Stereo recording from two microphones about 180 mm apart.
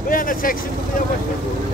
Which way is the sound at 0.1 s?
50° left (ahead or behind).